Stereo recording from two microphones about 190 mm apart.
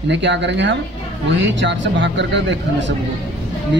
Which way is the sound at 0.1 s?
65° right (ahead or behind).